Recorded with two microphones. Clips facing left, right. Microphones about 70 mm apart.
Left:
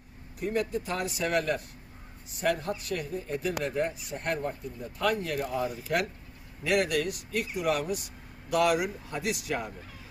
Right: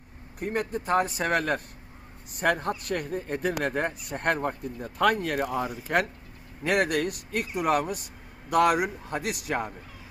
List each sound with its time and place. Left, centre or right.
0.3 s a man's voice: right
6.7 s a man's voice: right